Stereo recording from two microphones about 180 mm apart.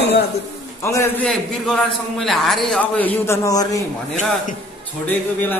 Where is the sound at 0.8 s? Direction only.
15° left (ahead or behind).